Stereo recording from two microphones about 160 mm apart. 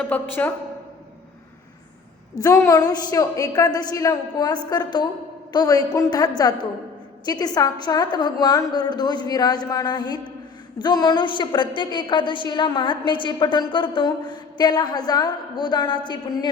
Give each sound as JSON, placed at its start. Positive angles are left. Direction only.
{"t": 0.0, "sound": "a woman's voice", "side_deg": 10}
{"t": 2.4, "sound": "a woman's voice", "side_deg": 20}